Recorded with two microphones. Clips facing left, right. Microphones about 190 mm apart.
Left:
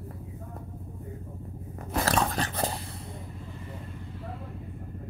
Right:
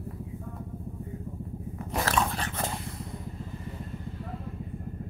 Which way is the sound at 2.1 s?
35° left (ahead or behind).